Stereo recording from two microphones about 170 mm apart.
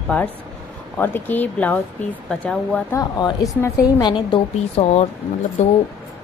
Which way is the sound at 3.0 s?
20° left (ahead or behind).